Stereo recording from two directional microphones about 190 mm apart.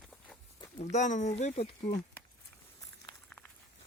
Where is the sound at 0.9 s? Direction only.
40° left (ahead or behind).